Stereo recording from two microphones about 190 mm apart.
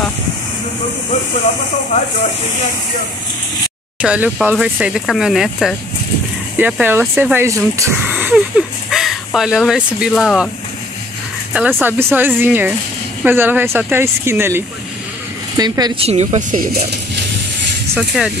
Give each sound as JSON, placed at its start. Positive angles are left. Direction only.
{"t": 4.0, "sound": "speech", "side_deg": -5}
{"t": 11.5, "sound": "speech", "side_deg": -10}
{"t": 17.9, "sound": "speech", "side_deg": -5}